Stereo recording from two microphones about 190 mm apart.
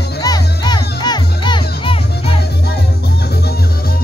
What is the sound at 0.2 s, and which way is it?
Music, 20° left (ahead or behind).